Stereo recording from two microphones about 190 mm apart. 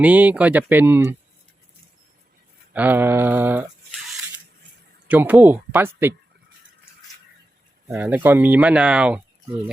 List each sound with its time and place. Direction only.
0.0 s speech: 10° right (ahead or behind)
2.7 s speech: 10° right (ahead or behind)
5.0 s speech: 10° right (ahead or behind)
7.9 s speech: 10° right (ahead or behind)